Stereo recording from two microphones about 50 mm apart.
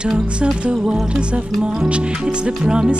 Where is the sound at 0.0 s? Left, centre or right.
Centre.